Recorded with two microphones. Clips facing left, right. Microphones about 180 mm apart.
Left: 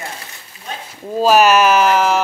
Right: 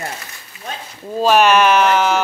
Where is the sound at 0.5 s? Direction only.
35° left (ahead or behind).